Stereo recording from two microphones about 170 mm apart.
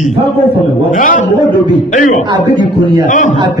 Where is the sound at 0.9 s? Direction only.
50° left (ahead or behind).